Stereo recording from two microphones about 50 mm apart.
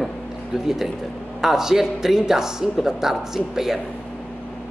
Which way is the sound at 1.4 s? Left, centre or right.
Centre.